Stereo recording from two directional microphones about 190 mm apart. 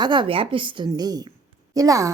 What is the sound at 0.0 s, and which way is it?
A woman's voice, 25° right (ahead or behind).